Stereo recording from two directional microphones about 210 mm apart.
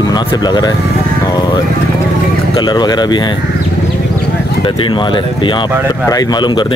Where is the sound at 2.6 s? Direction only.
20° left (ahead or behind).